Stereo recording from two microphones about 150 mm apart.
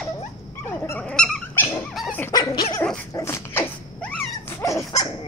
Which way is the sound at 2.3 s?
25° left (ahead or behind).